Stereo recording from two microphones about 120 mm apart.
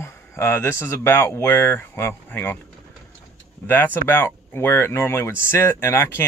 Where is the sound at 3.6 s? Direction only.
15° left (ahead or behind).